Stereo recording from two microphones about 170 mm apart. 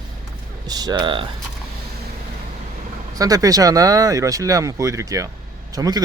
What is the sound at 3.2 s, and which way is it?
Speech, 20° right (ahead or behind).